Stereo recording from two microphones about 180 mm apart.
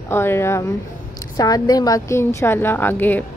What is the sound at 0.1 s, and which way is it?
Speech, 15° left (ahead or behind).